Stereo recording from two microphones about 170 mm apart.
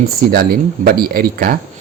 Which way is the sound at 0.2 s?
60° right (ahead or behind).